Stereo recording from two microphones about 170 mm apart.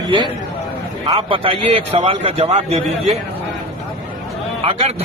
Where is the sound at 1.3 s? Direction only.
30° right (ahead or behind).